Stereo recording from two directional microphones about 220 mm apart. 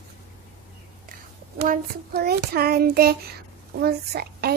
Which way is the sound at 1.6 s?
45° right (ahead or behind).